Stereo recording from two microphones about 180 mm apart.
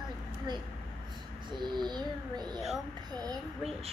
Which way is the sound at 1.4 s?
25° right (ahead or behind).